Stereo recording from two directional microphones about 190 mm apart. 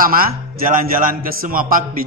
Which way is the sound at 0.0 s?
50° right (ahead or behind).